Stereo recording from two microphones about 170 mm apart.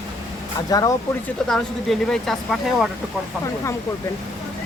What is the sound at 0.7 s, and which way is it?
Speech, 20° left (ahead or behind).